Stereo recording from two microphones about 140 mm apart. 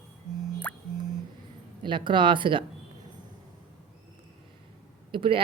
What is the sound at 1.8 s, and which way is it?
Speech, 35° right (ahead or behind).